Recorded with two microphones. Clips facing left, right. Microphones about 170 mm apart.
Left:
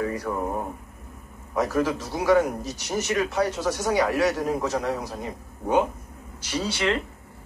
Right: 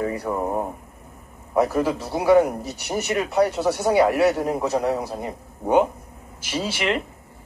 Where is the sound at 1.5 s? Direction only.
10° right (ahead or behind).